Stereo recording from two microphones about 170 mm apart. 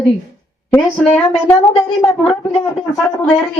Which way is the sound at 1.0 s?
5° left (ahead or behind).